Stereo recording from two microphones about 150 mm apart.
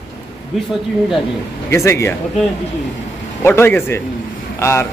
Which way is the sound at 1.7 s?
20° left (ahead or behind).